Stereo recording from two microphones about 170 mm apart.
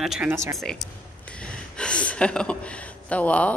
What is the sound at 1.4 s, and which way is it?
Speech, 5° left (ahead or behind).